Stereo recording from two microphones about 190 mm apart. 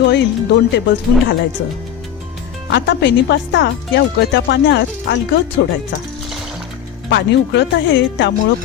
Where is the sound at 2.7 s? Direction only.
65° left (ahead or behind).